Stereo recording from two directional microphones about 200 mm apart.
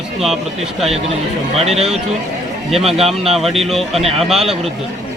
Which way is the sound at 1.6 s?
30° right (ahead or behind).